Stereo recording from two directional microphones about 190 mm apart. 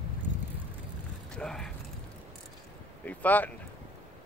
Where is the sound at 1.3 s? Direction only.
5° left (ahead or behind).